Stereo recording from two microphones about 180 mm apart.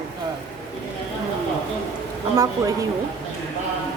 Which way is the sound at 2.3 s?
20° right (ahead or behind).